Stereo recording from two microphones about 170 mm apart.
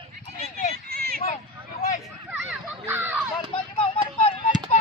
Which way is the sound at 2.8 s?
15° right (ahead or behind).